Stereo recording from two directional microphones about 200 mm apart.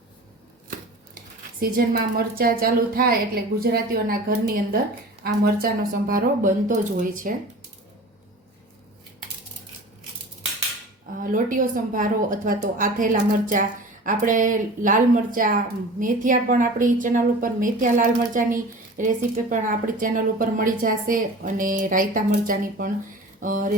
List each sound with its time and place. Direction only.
1.5 s a woman's voice: 45° right (ahead or behind)
11.2 s a woman's voice: 45° right (ahead or behind)